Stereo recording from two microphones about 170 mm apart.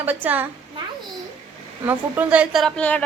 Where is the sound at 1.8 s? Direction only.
10° right (ahead or behind); by 3.0 s 10° left (ahead or behind).